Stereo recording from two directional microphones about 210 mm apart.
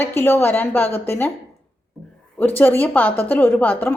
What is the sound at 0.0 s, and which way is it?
A woman's voice, 10° left (ahead or behind).